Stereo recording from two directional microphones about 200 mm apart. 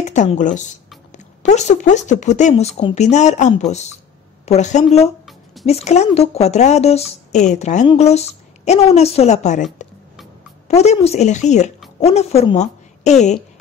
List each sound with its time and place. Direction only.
0.0 s speech: 35° left (ahead or behind)
5.2 s a sound: centre (ahead or behind)
5.7 s a woman's voice: 30° left (ahead or behind)